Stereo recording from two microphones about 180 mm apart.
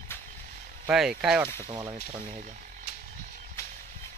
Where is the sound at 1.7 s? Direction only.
25° right (ahead or behind).